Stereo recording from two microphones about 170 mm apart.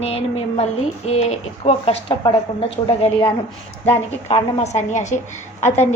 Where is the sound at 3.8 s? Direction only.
35° left (ahead or behind).